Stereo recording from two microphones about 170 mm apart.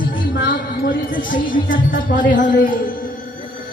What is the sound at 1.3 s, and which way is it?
Speech, 55° left (ahead or behind).